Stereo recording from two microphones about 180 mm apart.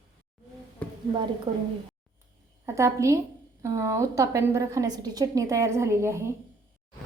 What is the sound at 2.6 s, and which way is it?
A woman's voice, 15° right (ahead or behind).